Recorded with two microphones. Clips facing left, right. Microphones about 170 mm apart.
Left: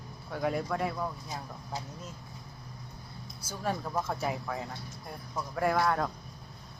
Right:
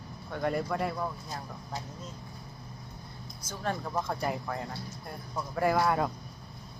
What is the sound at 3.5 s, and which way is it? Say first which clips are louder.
Speech: even; 5° left (ahead or behind).